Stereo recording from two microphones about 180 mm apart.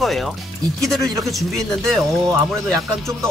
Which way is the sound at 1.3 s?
Centre (ahead or behind).